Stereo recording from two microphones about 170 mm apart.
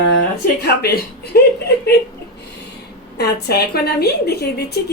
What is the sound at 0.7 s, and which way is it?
Speech, 65° left (ahead or behind).